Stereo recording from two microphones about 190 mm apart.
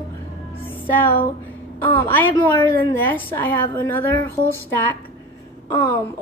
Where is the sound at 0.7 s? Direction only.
10° left (ahead or behind).